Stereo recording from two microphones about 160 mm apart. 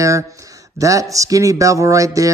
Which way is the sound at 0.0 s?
20° right (ahead or behind).